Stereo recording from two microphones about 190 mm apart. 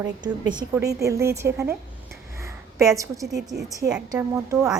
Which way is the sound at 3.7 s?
15° right (ahead or behind).